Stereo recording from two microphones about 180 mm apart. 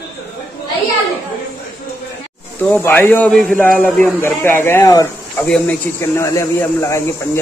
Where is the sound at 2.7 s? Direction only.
10° left (ahead or behind).